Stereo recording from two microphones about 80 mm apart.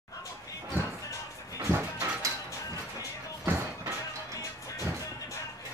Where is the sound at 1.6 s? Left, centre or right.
Right.